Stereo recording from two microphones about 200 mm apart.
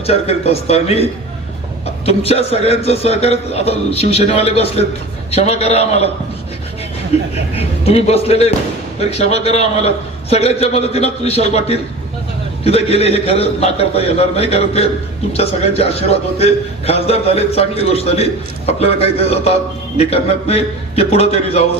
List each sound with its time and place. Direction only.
0.0 s a man's voice: 30° left (ahead or behind)
2.0 s a man's voice: 30° left (ahead or behind)
7.5 s a man's voice: 30° left (ahead or behind)